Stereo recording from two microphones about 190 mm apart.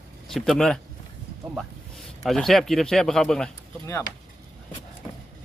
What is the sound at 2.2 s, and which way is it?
Speech, centre (ahead or behind).